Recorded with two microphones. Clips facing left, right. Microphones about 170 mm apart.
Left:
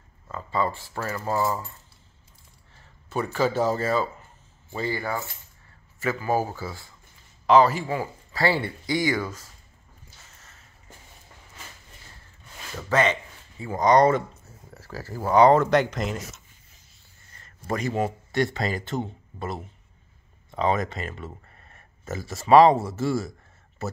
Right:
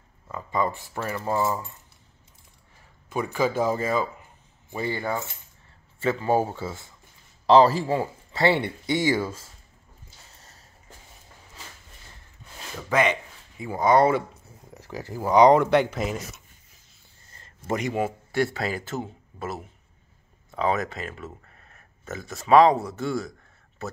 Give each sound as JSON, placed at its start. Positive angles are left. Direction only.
{"t": 0.3, "sound": "speech", "side_deg": -15}
{"t": 3.1, "sound": "speech", "side_deg": -10}
{"t": 10.3, "sound": "a sound", "side_deg": -35}
{"t": 12.7, "sound": "speech", "side_deg": -10}
{"t": 17.3, "sound": "a sound", "side_deg": -30}
{"t": 17.7, "sound": "speech", "side_deg": -15}
{"t": 18.0, "sound": "speech", "side_deg": -5}